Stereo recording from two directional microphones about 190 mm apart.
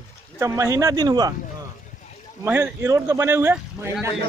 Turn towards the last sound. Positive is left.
turn(degrees=-10)  # may be behind; listen again after turning